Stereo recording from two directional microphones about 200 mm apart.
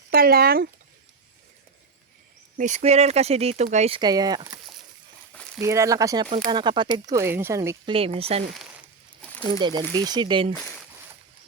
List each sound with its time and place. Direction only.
0.1 s speech: 50° right (ahead or behind)
2.6 s speech: 35° right (ahead or behind); by 4.6 s 20° right (ahead or behind)
5.3 s a sound: 5° left (ahead or behind)
5.5 s speech: 15° right (ahead or behind)
7.9 s speech: 30° right (ahead or behind)
9.6 s speech: 20° right (ahead or behind)